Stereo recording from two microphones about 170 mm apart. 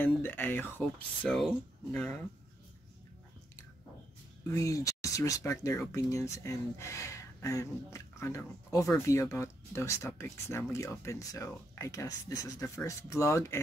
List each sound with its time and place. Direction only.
0.0 s speech: 10° left (ahead or behind)
4.5 s speech: 20° left (ahead or behind)